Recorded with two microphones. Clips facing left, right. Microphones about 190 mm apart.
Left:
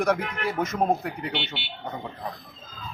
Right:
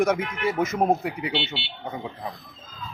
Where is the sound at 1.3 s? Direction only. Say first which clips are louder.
Right 3 dB; 30° right (ahead or behind).